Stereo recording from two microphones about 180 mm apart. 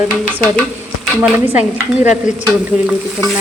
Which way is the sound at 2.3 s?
40° left (ahead or behind).